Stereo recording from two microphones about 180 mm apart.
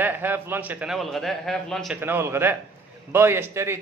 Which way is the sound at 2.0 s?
15° right (ahead or behind).